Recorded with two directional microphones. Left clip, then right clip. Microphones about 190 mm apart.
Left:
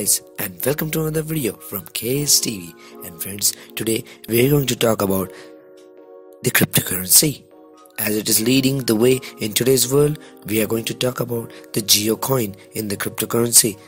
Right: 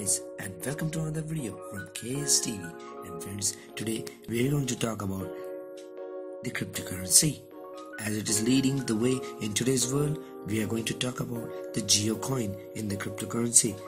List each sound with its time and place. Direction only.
0.0 s speech: 45° left (ahead or behind)
6.4 s speech: 50° left (ahead or behind)